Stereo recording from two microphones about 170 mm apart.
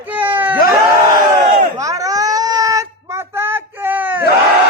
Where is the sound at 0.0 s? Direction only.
10° right (ahead or behind).